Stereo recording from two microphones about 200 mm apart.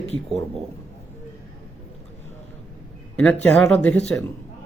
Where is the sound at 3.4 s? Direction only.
5° left (ahead or behind).